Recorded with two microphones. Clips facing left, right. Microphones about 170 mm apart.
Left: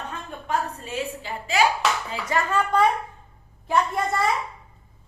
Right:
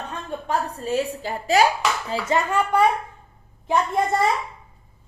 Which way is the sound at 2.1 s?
25° right (ahead or behind).